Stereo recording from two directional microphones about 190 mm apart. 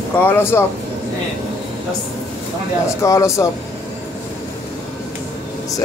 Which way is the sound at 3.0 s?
15° left (ahead or behind).